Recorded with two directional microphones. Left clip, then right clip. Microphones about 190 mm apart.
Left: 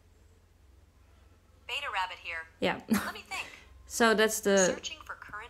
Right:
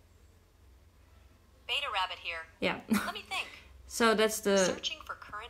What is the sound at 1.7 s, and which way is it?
Speech, 10° right (ahead or behind).